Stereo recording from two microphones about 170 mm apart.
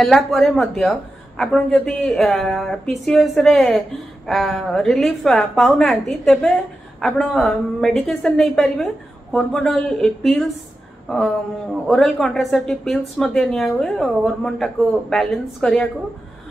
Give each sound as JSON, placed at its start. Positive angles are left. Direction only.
{"t": 0.0, "sound": "a woman's voice", "side_deg": 0}
{"t": 11.9, "sound": "a woman's voice", "side_deg": 0}